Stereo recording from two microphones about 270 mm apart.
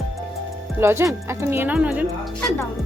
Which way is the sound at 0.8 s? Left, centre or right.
Centre.